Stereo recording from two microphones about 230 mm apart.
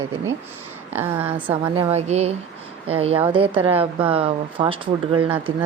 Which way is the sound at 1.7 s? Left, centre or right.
Right.